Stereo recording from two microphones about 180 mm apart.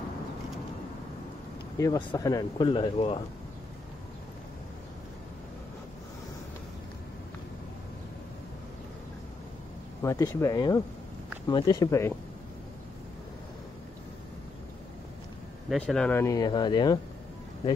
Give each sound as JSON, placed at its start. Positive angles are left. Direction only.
{"t": 1.8, "sound": "speech", "side_deg": 20}
{"t": 10.0, "sound": "speech", "side_deg": 20}
{"t": 15.7, "sound": "speech", "side_deg": 5}